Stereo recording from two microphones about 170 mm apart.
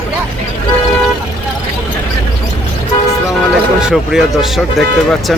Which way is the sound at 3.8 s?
5° right (ahead or behind).